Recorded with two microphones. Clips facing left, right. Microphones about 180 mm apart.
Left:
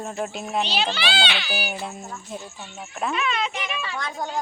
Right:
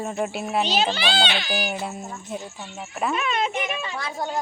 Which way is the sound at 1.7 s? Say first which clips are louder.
Right 2 dB; centre (ahead or behind).